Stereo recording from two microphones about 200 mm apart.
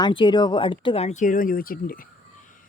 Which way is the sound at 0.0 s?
25° left (ahead or behind).